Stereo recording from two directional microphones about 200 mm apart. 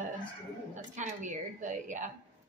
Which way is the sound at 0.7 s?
40° right (ahead or behind).